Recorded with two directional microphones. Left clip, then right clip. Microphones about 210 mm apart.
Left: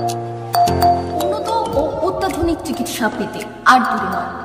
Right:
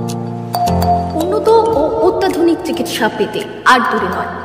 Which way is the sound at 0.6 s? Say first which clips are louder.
Right 3 dB; centre (ahead or behind).